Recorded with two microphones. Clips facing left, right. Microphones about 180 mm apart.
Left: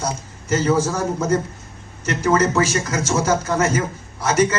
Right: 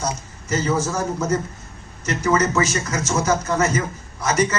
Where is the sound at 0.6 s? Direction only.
35° left (ahead or behind).